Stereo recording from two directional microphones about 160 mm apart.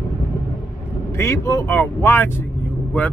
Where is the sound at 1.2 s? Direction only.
15° left (ahead or behind).